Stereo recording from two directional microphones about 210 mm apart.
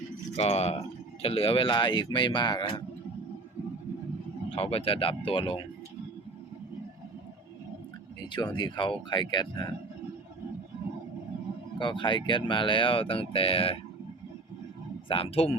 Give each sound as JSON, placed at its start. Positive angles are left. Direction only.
{"t": 0.3, "sound": "speech", "side_deg": 30}
{"t": 4.4, "sound": "speech", "side_deg": 25}
{"t": 8.3, "sound": "speech", "side_deg": 20}
{"t": 11.8, "sound": "speech", "side_deg": 20}
{"t": 15.1, "sound": "speech", "side_deg": 25}